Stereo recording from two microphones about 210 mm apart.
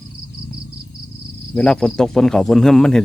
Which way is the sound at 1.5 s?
5° left (ahead or behind).